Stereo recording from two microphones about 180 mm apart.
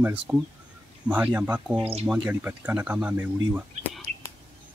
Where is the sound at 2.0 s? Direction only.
5° right (ahead or behind).